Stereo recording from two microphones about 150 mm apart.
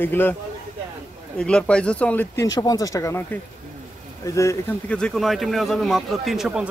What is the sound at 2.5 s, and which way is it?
Speech, 25° left (ahead or behind).